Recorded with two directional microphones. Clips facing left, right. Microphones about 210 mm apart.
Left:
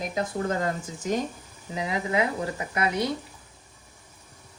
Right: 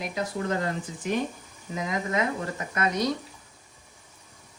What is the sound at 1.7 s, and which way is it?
Speech, 30° left (ahead or behind).